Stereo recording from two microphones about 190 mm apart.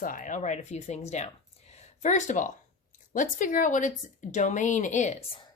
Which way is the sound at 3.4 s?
45° left (ahead or behind).